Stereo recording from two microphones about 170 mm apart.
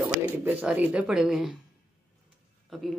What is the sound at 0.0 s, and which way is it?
Speech, 5° right (ahead or behind).